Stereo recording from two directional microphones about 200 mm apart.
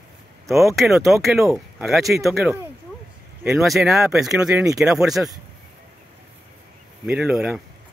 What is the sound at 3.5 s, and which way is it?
Speech, centre (ahead or behind).